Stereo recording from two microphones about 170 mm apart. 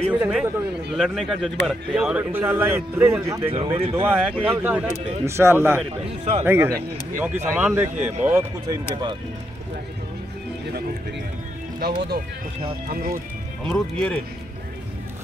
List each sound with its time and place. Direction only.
0.1 s speech: 5° right (ahead or behind)
3.5 s speech: 35° right (ahead or behind)
4.0 s speech: 10° right (ahead or behind)
11.8 s speech: 70° right (ahead or behind)
12.8 s speech: 55° right (ahead or behind)
13.7 s speech: 5° left (ahead or behind)